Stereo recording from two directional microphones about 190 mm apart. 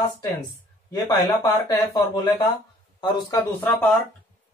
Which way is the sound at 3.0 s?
20° left (ahead or behind).